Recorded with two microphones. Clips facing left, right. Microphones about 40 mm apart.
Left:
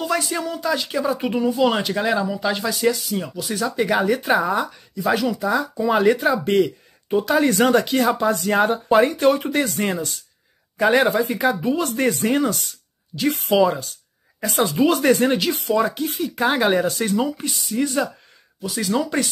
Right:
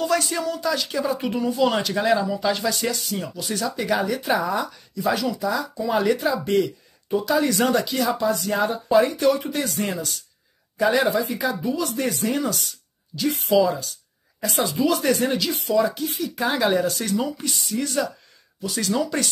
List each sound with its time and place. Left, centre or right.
0.0 s speech: centre
2.7 s speech: centre
3.6 s speech: left
17.5 s speech: centre
17.7 s speech: centre